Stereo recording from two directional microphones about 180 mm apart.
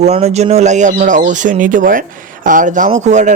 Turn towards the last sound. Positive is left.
turn(degrees=-40)  # may be behind; listen again after turning